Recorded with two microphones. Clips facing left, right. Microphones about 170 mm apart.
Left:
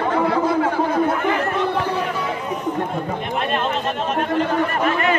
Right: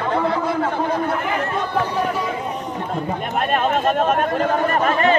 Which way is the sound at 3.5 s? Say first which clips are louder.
Right 7 dB; 50° right (ahead or behind).